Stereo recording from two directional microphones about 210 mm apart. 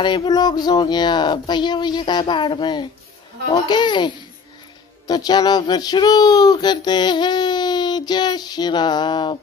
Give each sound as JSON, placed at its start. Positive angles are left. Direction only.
{"t": 0.0, "sound": "speech", "side_deg": 20}